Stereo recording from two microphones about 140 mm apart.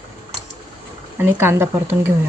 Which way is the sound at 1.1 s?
15° right (ahead or behind).